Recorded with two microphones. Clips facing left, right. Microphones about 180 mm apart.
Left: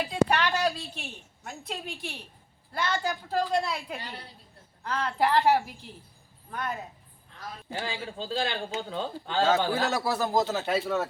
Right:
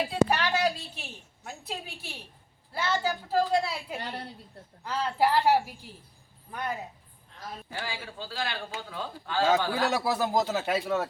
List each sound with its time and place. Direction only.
0.1 s a sound: 10° right (ahead or behind)
1.5 s a woman's voice: 5° right (ahead or behind)
4.9 s speech: 10° right (ahead or behind)
7.7 s speech: 20° left (ahead or behind)
9.9 s speech: 15° right (ahead or behind)